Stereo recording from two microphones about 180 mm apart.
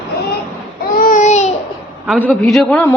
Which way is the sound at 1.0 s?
45° left (ahead or behind).